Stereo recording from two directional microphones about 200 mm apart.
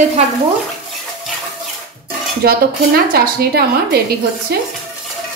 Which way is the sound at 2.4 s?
50° right (ahead or behind).